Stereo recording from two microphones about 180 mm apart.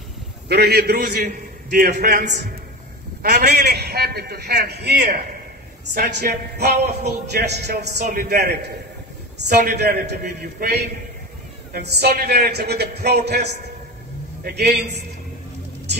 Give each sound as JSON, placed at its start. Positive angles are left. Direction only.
{"t": 0.5, "sound": "a man's voice", "side_deg": -65}
{"t": 5.9, "sound": "a man's voice", "side_deg": -65}
{"t": 8.0, "sound": "a man's voice", "side_deg": -55}